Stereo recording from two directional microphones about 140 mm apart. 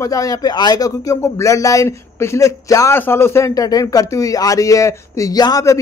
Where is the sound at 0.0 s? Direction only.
25° left (ahead or behind).